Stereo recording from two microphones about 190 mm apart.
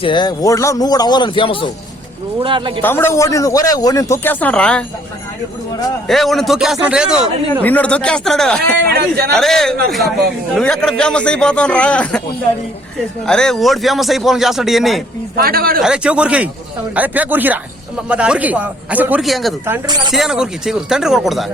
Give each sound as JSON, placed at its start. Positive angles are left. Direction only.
{"t": 0.0, "sound": "speech", "side_deg": 25}
{"t": 2.4, "sound": "speech", "side_deg": -25}
{"t": 2.8, "sound": "a man's voice", "side_deg": 10}
{"t": 6.1, "sound": "speech", "side_deg": 0}
{"t": 7.6, "sound": "speech", "side_deg": 10}
{"t": 8.9, "sound": "a man's voice", "side_deg": -55}
{"t": 9.3, "sound": "speech", "side_deg": 0}
{"t": 13.2, "sound": "speech", "side_deg": 5}
{"t": 15.4, "sound": "speech", "side_deg": -50}
{"t": 15.8, "sound": "a man's voice", "side_deg": -5}